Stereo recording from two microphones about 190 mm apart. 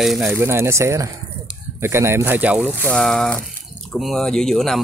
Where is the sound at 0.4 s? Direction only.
15° right (ahead or behind).